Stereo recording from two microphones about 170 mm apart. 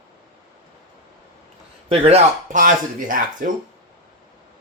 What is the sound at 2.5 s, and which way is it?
Speech, 50° right (ahead or behind).